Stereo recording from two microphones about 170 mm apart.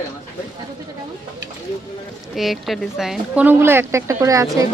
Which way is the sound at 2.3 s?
Centre (ahead or behind).